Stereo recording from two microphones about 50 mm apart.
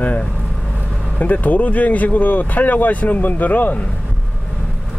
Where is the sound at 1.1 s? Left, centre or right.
Left.